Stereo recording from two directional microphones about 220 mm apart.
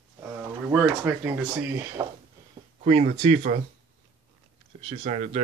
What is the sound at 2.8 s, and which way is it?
Speech, 30° right (ahead or behind).